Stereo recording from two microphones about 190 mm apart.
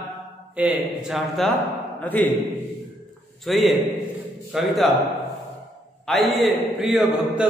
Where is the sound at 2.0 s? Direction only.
10° left (ahead or behind).